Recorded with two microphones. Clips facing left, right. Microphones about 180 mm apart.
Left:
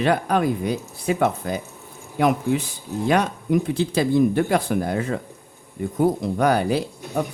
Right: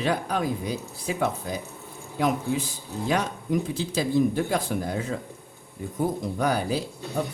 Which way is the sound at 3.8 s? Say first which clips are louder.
Left 4 dB; 65° left (ahead or behind).